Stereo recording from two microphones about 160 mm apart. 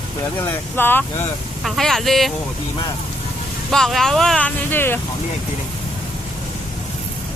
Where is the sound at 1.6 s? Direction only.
Centre (ahead or behind).